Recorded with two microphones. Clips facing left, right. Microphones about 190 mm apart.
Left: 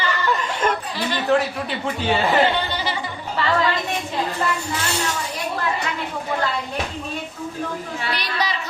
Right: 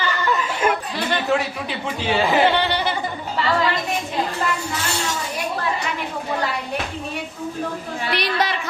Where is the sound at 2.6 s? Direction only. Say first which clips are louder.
Right 4 dB; 65° right (ahead or behind).